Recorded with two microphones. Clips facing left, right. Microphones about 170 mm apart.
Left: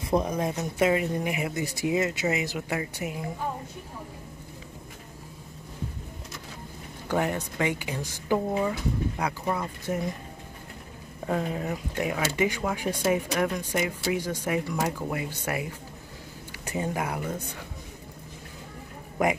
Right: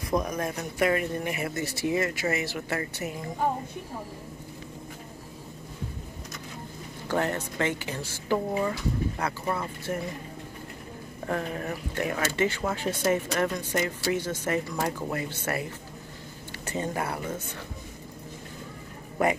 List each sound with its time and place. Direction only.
0.1 s speech: 25° left (ahead or behind); by 3.3 s 10° left (ahead or behind)
7.1 s speech: 15° left (ahead or behind)
11.2 s speech: 15° left (ahead or behind)